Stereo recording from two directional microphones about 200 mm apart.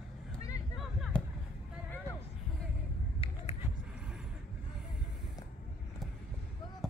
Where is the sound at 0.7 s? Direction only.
Centre (ahead or behind).